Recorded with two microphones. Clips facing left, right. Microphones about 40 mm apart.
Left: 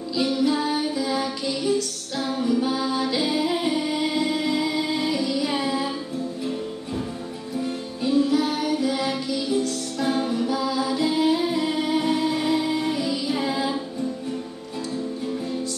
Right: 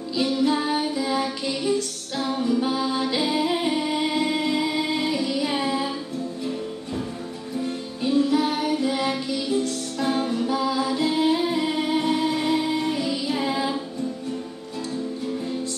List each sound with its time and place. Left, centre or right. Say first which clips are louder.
0.4 s music: right 1 dB; right
2.3 s music: even; centre
8.0 s music: even; right
9.9 s music: even; centre
12.0 s music: even; centre